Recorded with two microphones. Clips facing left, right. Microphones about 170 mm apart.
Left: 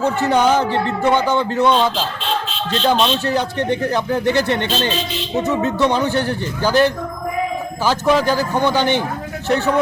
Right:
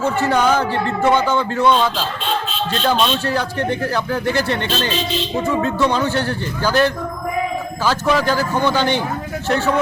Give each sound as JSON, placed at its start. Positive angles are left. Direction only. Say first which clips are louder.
{"t": 0.0, "sound": "a man's voice", "louder": "left 1 dB", "side_deg": 20}